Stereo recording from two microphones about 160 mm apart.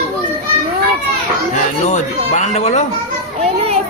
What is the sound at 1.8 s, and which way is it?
Speech, 45° left (ahead or behind).